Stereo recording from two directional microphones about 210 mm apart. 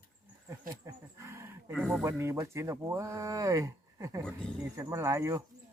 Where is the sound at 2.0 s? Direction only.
15° right (ahead or behind).